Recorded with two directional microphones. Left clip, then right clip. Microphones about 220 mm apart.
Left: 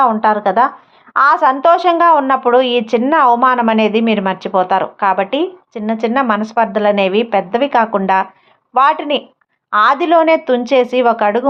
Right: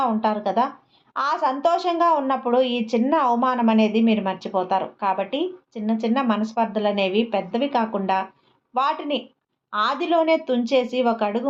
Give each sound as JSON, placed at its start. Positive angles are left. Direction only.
{"t": 0.0, "sound": "a woman's voice", "side_deg": 25}